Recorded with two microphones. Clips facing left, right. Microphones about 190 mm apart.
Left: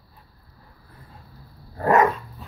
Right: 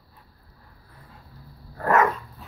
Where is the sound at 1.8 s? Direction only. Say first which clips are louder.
Left 3 dB; 20° left (ahead or behind).